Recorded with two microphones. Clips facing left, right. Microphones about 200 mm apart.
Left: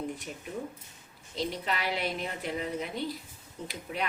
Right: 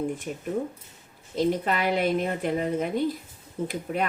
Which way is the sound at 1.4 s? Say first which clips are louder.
Right 8 dB; 50° right (ahead or behind).